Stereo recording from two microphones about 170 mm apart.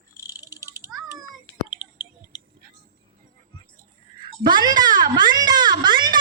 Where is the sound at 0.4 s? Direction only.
20° left (ahead or behind).